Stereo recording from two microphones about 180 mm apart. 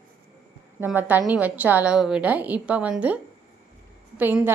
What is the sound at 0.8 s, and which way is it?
Speech, 10° right (ahead or behind).